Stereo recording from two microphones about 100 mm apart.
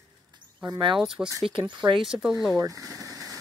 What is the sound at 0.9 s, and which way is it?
Speech, 5° right (ahead or behind).